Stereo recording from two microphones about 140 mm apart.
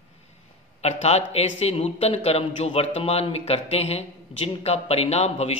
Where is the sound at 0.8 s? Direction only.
50° left (ahead or behind).